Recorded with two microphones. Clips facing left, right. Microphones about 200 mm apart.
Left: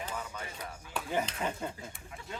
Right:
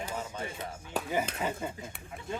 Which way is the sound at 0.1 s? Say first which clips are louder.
Right 3 dB; 25° right (ahead or behind).